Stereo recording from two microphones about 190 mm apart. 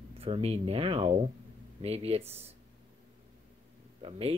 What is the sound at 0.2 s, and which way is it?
Speech, 30° right (ahead or behind).